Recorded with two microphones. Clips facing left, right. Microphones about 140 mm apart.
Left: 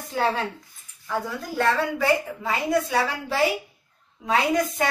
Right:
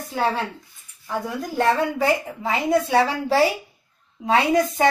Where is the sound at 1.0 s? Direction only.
15° right (ahead or behind).